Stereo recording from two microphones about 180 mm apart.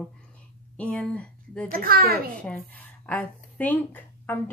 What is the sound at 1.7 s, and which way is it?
Speech, 55° right (ahead or behind).